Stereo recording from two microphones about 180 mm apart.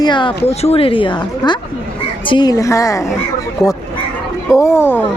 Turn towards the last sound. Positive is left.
turn(degrees=10)  # may be behind; listen again after turning